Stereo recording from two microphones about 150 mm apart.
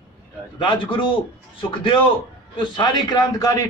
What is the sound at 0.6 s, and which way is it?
Speech, 30° left (ahead or behind).